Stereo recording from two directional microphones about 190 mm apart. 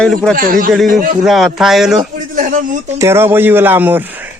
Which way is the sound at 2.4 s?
45° right (ahead or behind).